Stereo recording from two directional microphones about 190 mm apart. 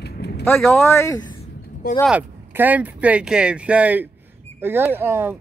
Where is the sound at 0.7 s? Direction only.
10° left (ahead or behind).